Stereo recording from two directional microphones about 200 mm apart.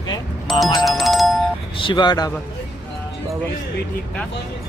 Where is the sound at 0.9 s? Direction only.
Centre (ahead or behind).